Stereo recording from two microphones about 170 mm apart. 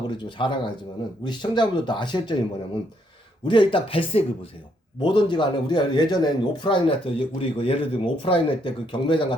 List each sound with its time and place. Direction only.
0.1 s a man's voice: 30° left (ahead or behind)
3.4 s a man's voice: 30° left (ahead or behind)